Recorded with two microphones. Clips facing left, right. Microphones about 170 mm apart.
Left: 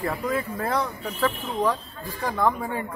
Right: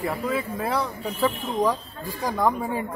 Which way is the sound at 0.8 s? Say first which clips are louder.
Right 1 dB; 35° right (ahead or behind).